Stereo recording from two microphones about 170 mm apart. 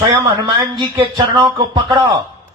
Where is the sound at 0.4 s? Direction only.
25° right (ahead or behind).